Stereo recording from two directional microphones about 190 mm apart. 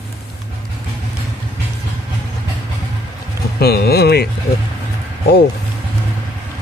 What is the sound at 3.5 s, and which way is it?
Speech, 55° left (ahead or behind).